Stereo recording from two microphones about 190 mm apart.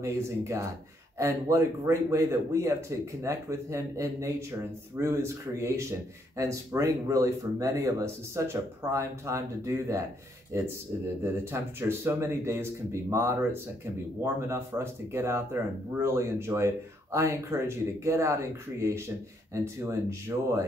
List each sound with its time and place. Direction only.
0.0 s a man's voice: 15° right (ahead or behind)